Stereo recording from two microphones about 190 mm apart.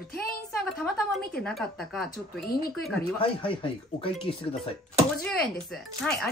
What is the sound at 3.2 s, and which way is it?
Speech, 30° left (ahead or behind).